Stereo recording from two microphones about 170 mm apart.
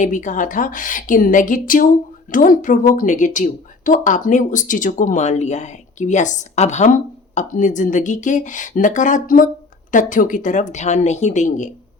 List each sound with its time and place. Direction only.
0.0 s speech: 50° left (ahead or behind)